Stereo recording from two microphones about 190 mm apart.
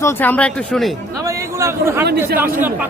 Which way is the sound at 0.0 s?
10° left (ahead or behind).